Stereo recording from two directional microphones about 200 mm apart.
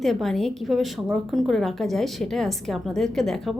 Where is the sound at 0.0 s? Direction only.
Centre (ahead or behind).